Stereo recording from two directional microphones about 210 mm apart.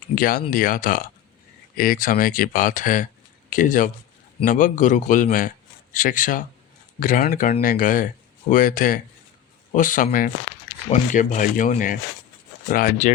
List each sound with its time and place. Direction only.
0.2 s a man's voice: 40° left (ahead or behind)